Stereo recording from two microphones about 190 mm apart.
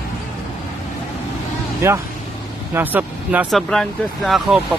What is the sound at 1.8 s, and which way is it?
Speech, 15° right (ahead or behind).